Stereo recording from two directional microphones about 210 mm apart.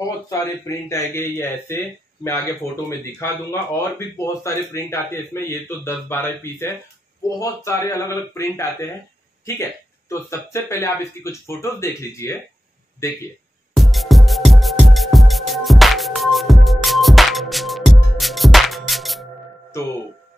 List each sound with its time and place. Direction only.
0.3 s speech: 15° left (ahead or behind)
2.9 s speech: 10° left (ahead or behind)
13.7 s music: centre (ahead or behind)